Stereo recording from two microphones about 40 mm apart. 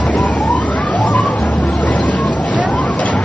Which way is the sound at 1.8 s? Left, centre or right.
Left.